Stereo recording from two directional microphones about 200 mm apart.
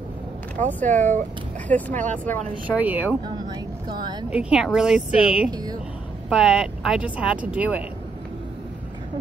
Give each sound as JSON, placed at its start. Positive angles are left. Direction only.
{"t": 0.6, "sound": "speech", "side_deg": 10}
{"t": 2.7, "sound": "speech", "side_deg": -10}
{"t": 3.4, "sound": "speech", "side_deg": -20}
{"t": 4.3, "sound": "speech", "side_deg": -5}
{"t": 5.5, "sound": "speech", "side_deg": -20}
{"t": 6.2, "sound": "speech", "side_deg": -5}